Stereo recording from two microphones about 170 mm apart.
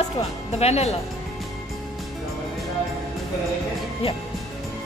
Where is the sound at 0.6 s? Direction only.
40° left (ahead or behind).